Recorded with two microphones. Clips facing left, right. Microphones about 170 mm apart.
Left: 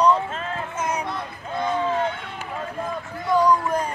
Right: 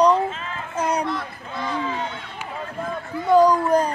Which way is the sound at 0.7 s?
35° right (ahead or behind).